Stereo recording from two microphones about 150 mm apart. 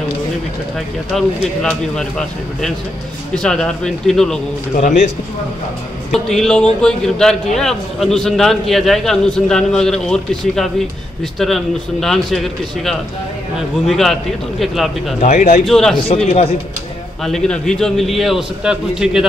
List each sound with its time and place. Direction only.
1.1 s a man's voice: 5° left (ahead or behind)
4.7 s a man's voice: 55° left (ahead or behind)
6.1 s a man's voice: 5° left (ahead or behind)
15.1 s speech: 50° left (ahead or behind)
15.6 s a man's voice: 5° left (ahead or behind)
17.2 s a man's voice: 5° left (ahead or behind)